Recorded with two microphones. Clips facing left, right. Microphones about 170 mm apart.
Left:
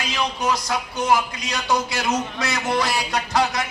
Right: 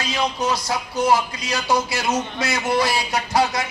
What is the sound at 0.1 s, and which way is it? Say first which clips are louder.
A man's voice: right 1 dB; 30° right (ahead or behind).